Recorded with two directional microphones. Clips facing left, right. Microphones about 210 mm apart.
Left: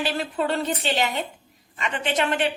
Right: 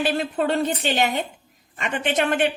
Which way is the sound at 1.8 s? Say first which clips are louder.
Right 2 dB; 50° right (ahead or behind).